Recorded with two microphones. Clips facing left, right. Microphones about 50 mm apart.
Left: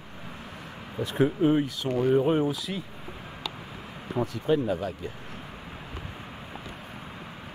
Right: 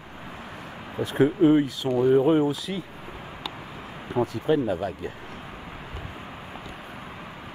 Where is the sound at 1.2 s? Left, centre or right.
Centre.